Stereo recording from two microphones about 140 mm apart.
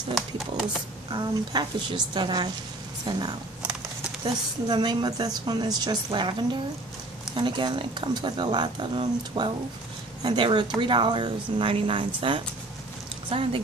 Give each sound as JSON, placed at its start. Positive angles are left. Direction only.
{"t": 1.1, "sound": "speech", "side_deg": -30}
{"t": 7.3, "sound": "speech", "side_deg": -35}